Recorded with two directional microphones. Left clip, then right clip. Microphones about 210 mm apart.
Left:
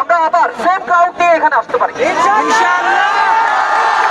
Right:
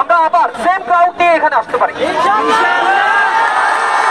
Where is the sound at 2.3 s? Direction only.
40° left (ahead or behind).